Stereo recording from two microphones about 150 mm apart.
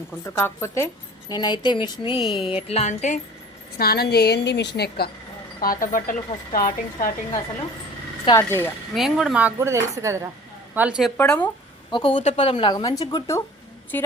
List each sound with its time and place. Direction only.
0.3 s speech: 20° left (ahead or behind)
2.3 s music: 40° left (ahead or behind)
3.8 s a woman's voice: 90° left
5.8 s speech: 60° left (ahead or behind)
8.2 s speech: 30° left (ahead or behind)
8.4 s speech: 15° left (ahead or behind)
9.0 s speech: 5° right (ahead or behind)
9.6 s speech: 20° right (ahead or behind)
10.8 s a woman's voice: 5° right (ahead or behind)
11.2 s speech: 10° left (ahead or behind)
11.9 s speech: 35° left (ahead or behind)